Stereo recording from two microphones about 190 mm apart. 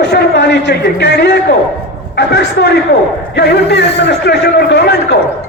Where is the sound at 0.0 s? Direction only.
60° left (ahead or behind).